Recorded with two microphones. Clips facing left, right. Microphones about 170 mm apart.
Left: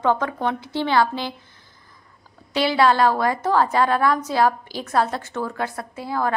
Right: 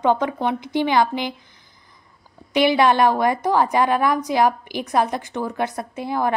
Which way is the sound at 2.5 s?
20° right (ahead or behind).